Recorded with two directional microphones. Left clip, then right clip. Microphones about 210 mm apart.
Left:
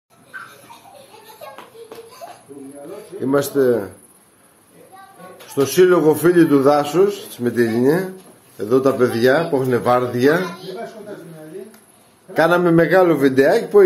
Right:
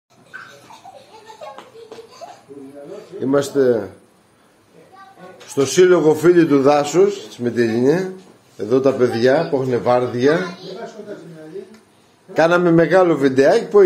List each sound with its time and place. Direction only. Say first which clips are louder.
3.2 s a man's voice: right 1 dB; centre (ahead or behind)
5.5 s a man's voice: right 1 dB; 10° right (ahead or behind); by 10.4 s 10° left (ahead or behind)
12.4 s a man's voice: right 1 dB; centre (ahead or behind)